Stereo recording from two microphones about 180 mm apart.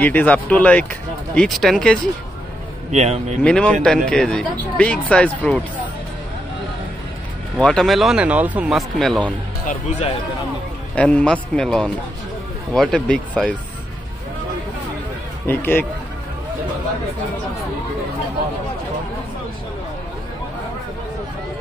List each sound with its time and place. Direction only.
0.0 s speech: 10° left (ahead or behind)
2.9 s speech: 40° right (ahead or behind)
3.4 s speech: 5° left (ahead or behind)
7.5 s speech: 5° left (ahead or behind)
11.0 s speech: 5° left (ahead or behind)
15.4 s speech: 10° left (ahead or behind)